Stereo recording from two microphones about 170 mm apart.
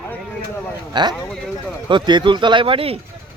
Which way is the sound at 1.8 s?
25° right (ahead or behind).